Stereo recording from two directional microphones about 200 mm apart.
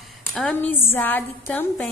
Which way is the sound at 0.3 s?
5° left (ahead or behind).